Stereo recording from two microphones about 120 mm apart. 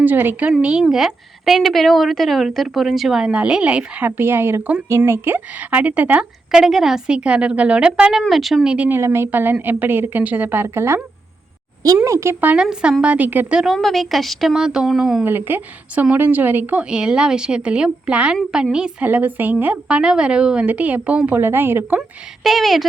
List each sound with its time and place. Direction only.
0.0 s a woman's voice: 15° right (ahead or behind)
9.0 s a woman's voice: 20° right (ahead or behind)
12.0 s a woman's voice: 25° right (ahead or behind); by 15.2 s 5° right (ahead or behind)
15.2 s a woman's voice: 15° right (ahead or behind)
22.4 s a woman's voice: centre (ahead or behind)